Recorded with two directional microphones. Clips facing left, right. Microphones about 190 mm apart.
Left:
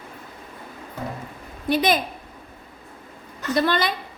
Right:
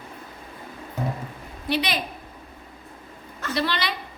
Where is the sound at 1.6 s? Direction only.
45° left (ahead or behind).